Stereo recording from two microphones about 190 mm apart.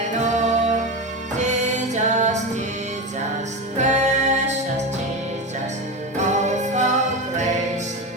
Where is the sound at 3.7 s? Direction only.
35° right (ahead or behind).